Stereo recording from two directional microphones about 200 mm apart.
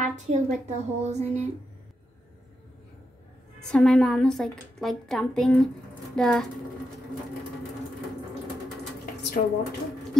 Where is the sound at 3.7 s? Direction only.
5° left (ahead or behind).